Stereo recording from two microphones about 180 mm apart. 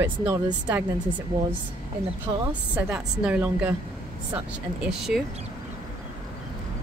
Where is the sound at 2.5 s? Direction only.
5° right (ahead or behind).